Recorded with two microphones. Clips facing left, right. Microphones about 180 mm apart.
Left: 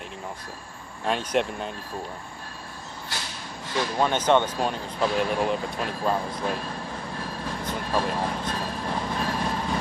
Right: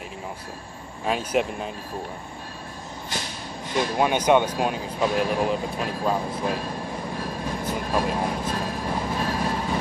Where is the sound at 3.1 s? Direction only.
20° right (ahead or behind).